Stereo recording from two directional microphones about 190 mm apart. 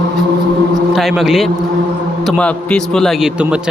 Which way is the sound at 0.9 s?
Centre (ahead or behind).